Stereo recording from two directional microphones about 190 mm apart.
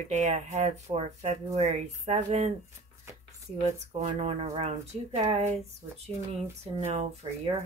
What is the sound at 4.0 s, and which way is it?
Speech, 35° right (ahead or behind).